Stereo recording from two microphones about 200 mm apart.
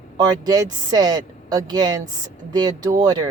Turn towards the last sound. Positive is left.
turn(degrees=-20)  # may be behind; listen again after turning